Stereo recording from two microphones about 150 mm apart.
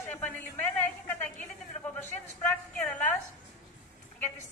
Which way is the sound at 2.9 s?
10° left (ahead or behind).